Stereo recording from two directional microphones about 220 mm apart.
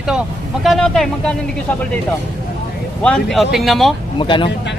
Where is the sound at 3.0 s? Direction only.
5° left (ahead or behind).